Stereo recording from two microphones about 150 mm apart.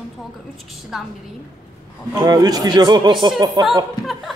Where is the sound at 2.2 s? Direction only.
25° right (ahead or behind).